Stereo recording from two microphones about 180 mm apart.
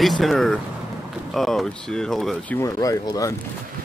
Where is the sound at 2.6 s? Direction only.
20° left (ahead or behind).